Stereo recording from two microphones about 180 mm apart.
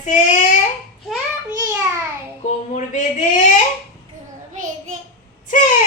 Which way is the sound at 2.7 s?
40° left (ahead or behind).